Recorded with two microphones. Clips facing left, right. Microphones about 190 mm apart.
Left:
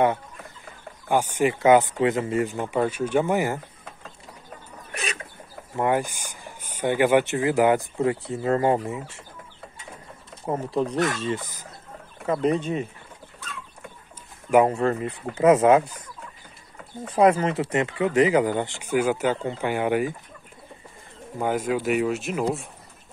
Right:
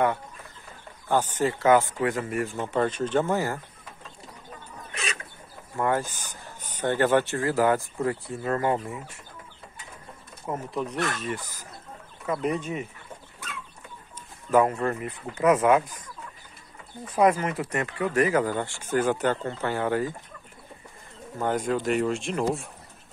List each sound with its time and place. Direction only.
1.0 s speech: 15° left (ahead or behind)
5.8 s speech: 15° left (ahead or behind)
10.4 s speech: 30° left (ahead or behind)
14.1 s chicken: 15° left (ahead or behind)
14.7 s speech: 25° left (ahead or behind)
17.1 s speech: 30° left (ahead or behind)
21.4 s speech: 10° left (ahead or behind)